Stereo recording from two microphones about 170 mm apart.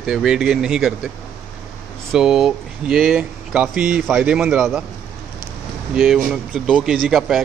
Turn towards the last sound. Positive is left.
turn(degrees=0)  # may be behind; listen again after turning